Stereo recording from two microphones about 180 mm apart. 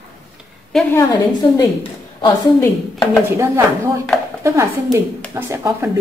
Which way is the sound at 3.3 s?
15° right (ahead or behind).